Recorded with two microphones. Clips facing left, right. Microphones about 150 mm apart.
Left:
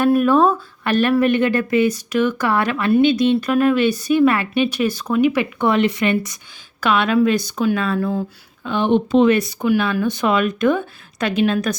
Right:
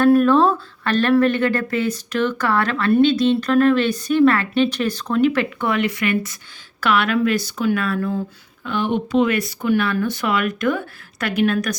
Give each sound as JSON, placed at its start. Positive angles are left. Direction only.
{"t": 0.1, "sound": "speech", "side_deg": 5}
{"t": 5.6, "sound": "speech", "side_deg": 25}